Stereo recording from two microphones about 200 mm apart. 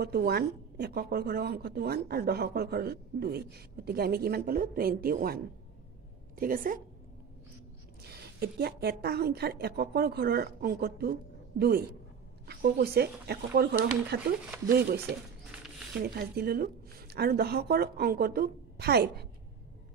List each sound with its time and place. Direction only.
0.0 s a woman's voice: 50° right (ahead or behind)
8.4 s a woman's voice: 50° right (ahead or behind)
16.0 s a woman's voice: 50° right (ahead or behind)